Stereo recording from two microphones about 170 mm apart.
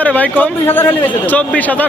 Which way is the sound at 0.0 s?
10° left (ahead or behind).